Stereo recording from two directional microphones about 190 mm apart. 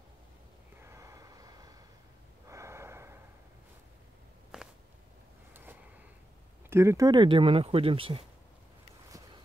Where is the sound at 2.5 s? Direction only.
15° right (ahead or behind).